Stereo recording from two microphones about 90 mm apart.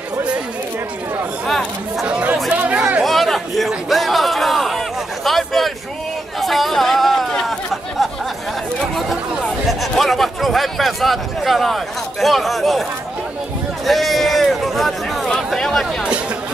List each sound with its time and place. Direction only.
1.5 s speech: centre (ahead or behind)
2.0 s chatter: 15° right (ahead or behind)
2.5 s a sound: 15° right (ahead or behind)
3.0 s crowd: centre (ahead or behind)
6.4 s chatter: centre (ahead or behind)
9.7 s speech: centre (ahead or behind)
13.8 s a sound: centre (ahead or behind)